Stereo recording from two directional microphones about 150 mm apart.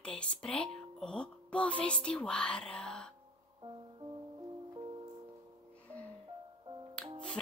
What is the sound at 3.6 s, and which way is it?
Music, 30° right (ahead or behind).